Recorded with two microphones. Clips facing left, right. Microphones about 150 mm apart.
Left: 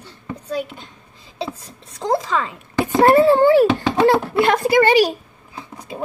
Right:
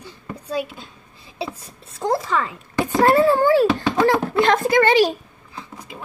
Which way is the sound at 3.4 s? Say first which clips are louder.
Left 3 dB; 20° left (ahead or behind).